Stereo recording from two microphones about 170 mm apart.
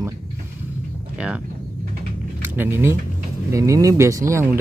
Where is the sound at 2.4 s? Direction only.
15° right (ahead or behind).